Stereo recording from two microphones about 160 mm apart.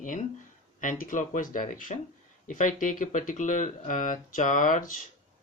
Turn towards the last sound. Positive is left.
turn(degrees=55)  # may be behind; listen again after turning